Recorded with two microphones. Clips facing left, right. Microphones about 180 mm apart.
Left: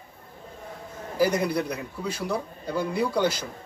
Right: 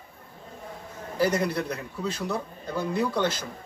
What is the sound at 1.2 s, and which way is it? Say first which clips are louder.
A man's voice: left 1 dB; 10° left (ahead or behind).